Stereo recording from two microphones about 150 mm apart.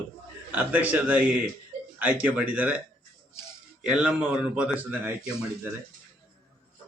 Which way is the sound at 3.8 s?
5° right (ahead or behind).